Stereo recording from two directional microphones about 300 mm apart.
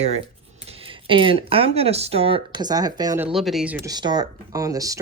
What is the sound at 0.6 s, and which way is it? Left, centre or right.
Speech, centre.